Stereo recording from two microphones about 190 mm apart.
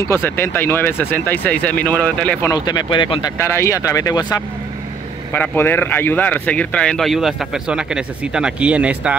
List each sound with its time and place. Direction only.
0.0 s speech: 10° left (ahead or behind)
2.5 s speech: 20° left (ahead or behind)
3.3 s speech: 15° left (ahead or behind)
5.3 s speech: 10° left (ahead or behind); by 9.1 s 5° right (ahead or behind)